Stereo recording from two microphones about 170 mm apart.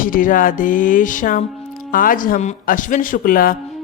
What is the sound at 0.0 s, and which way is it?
A man's voice, 55° left (ahead or behind).